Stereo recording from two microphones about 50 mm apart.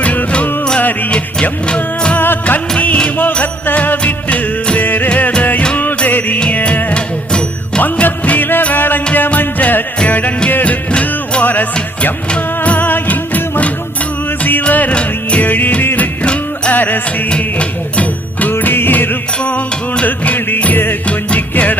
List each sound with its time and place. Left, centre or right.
0.0 s music: left
1.1 s music: centre
2.1 s music of bollywood: left
2.7 s music: left
4.8 s music: left
14.7 s music of bollywood: left
15.4 s music: left
16.0 s music: left
16.7 s music: left
17.2 s music: left
19.4 s music: left